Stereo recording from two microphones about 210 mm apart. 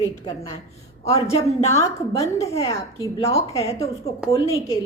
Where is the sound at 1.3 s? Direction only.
30° left (ahead or behind).